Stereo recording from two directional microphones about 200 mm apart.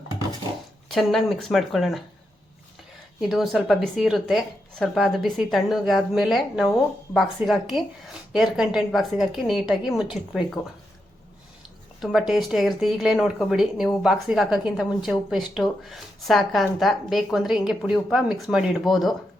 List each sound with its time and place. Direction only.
0.9 s a woman's voice: centre (ahead or behind)
3.2 s a woman's voice: centre (ahead or behind)
11.9 s a woman's voice: centre (ahead or behind)